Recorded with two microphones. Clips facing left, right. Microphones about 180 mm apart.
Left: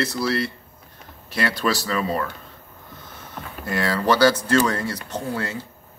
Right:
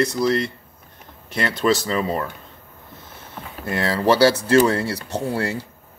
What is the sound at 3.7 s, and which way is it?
Speech, 25° right (ahead or behind).